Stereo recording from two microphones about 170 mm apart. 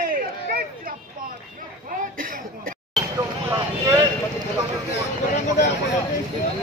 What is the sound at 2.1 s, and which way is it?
Throat clearing, 55° right (ahead or behind).